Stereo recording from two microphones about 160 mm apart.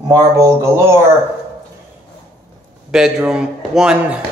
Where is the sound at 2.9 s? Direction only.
5° right (ahead or behind).